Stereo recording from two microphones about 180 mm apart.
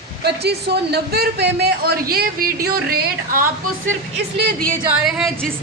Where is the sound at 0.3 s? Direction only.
65° right (ahead or behind).